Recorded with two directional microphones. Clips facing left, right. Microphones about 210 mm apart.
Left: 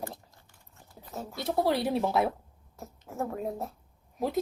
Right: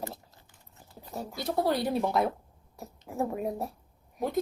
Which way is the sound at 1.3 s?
Centre (ahead or behind).